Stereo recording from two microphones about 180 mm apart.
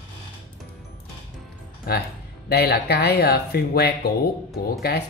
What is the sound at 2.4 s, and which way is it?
Speech, 60° left (ahead or behind).